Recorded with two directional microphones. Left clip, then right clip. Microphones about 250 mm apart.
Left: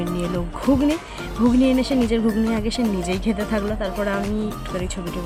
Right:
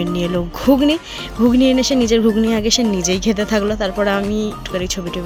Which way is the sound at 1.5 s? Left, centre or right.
Right.